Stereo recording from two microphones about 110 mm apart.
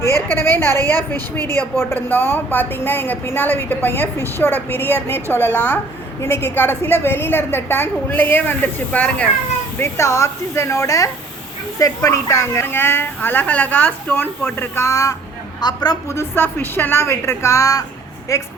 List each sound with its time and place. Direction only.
0.0 s a woman's voice: 25° left (ahead or behind)
9.7 s a woman's voice: 25° left (ahead or behind)
15.6 s a woman's voice: 40° left (ahead or behind)
16.0 s a woman's voice: 25° left (ahead or behind)